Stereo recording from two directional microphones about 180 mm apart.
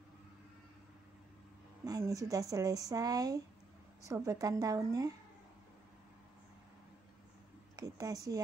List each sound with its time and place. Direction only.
1.9 s speech: 20° right (ahead or behind)
7.7 s speech: 20° right (ahead or behind)